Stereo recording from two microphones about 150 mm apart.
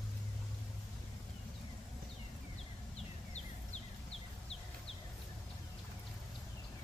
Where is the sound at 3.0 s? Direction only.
45° left (ahead or behind).